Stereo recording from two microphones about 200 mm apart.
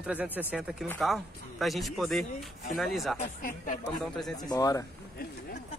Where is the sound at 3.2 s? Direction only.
40° left (ahead or behind).